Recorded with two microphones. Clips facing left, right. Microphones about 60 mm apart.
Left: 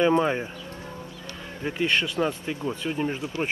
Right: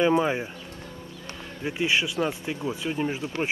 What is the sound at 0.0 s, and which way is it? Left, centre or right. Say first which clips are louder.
Speech: left 1 dB; centre.